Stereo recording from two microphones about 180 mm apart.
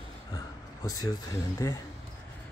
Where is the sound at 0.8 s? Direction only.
20° left (ahead or behind).